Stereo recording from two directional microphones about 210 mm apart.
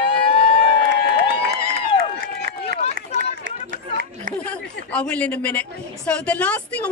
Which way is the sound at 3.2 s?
40° right (ahead or behind).